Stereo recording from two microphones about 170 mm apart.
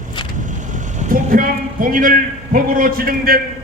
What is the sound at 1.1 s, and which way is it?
A man's voice, 55° right (ahead or behind).